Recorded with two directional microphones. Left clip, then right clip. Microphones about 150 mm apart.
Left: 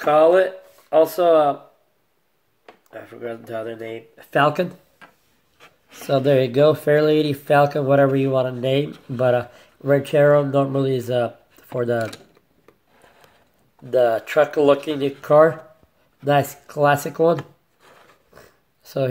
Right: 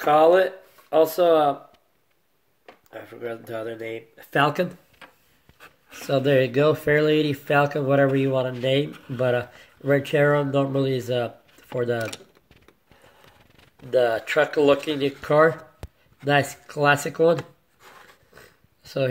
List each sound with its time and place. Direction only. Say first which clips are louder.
0.0 s speech: left 2 dB; 15° right (ahead or behind)
2.9 s speech: left 2 dB; 15° right (ahead or behind)
5.9 s speech: left 3 dB; 5° right (ahead or behind)
13.8 s speech: left 3 dB; centre (ahead or behind)
18.3 s a sound: left 1 dB; centre (ahead or behind)